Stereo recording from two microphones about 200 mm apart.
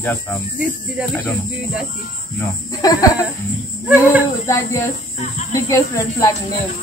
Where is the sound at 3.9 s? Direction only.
10° right (ahead or behind).